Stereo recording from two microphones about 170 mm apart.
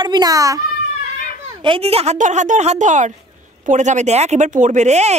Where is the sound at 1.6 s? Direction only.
35° right (ahead or behind).